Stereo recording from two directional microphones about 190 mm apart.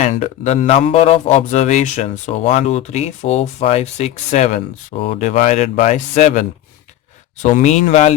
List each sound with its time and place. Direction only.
0.0 s speech: 35° left (ahead or behind)